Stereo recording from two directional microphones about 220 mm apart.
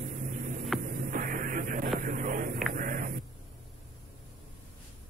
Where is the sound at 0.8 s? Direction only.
40° right (ahead or behind).